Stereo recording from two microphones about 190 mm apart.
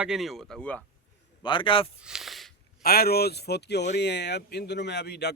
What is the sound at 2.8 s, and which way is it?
A man's voice, 55° left (ahead or behind).